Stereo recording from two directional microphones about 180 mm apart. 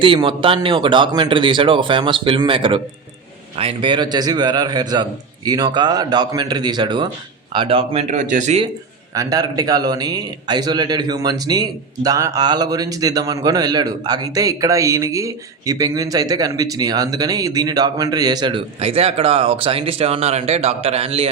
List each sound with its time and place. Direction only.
0.0 s a man's voice: 30° right (ahead or behind)
9.1 s a man's voice: 20° right (ahead or behind)